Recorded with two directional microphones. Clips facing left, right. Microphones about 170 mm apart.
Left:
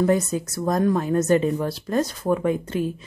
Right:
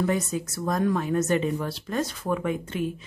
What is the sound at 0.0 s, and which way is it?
A woman's voice, 40° left (ahead or behind).